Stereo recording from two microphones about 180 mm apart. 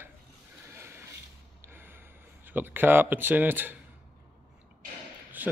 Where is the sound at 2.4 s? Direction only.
10° right (ahead or behind).